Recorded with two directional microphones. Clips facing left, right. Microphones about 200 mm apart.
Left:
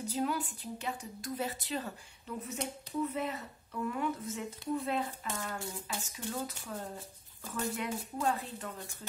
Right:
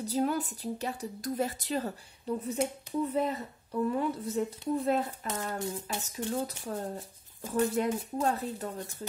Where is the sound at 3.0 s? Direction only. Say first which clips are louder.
Right 7 dB; 35° right (ahead or behind).